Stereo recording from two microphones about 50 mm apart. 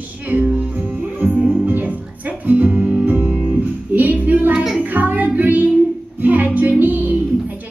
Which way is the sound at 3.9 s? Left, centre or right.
Right.